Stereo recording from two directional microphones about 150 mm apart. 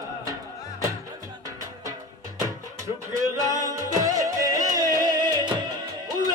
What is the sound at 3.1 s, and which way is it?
Music, 25° right (ahead or behind).